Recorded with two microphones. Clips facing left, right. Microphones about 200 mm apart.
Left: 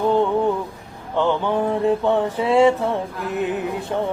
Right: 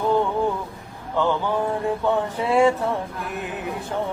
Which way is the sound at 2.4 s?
25° left (ahead or behind).